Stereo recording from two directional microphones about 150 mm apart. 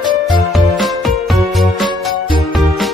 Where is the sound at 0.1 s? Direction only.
Centre (ahead or behind).